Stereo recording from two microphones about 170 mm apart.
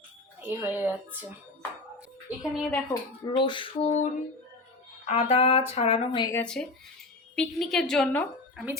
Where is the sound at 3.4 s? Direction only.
30° left (ahead or behind).